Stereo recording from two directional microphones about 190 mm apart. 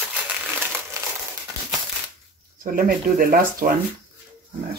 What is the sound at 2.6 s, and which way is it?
Speech, 45° right (ahead or behind).